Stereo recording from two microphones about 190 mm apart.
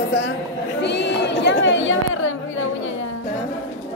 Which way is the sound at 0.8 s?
65° left (ahead or behind).